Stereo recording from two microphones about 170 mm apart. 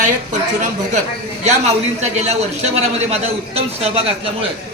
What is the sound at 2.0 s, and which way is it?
A man's voice, 40° right (ahead or behind).